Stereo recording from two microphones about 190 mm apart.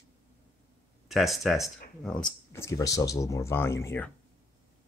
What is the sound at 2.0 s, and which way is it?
Speech, 10° left (ahead or behind).